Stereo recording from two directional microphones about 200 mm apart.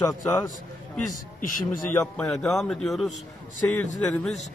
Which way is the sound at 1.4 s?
40° left (ahead or behind).